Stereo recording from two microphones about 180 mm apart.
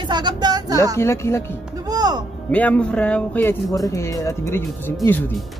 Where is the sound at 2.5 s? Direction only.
10° left (ahead or behind).